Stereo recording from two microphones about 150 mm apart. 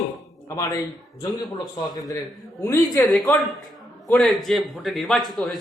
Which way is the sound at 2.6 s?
15° left (ahead or behind).